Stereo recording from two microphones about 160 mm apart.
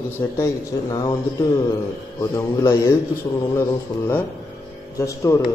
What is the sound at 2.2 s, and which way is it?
A man's voice, 20° left (ahead or behind).